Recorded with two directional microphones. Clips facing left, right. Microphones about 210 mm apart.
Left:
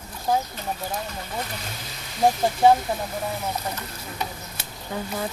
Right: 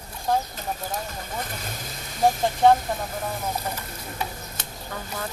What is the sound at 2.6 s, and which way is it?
Speech, 5° left (ahead or behind).